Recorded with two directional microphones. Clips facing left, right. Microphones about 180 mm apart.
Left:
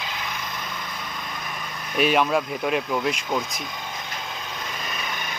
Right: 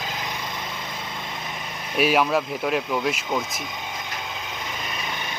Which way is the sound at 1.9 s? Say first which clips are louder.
Even; 5° right (ahead or behind).